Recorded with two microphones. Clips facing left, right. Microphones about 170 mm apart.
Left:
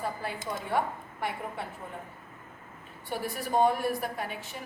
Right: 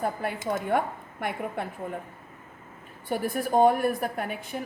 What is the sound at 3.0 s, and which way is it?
A woman's voice, 50° right (ahead or behind).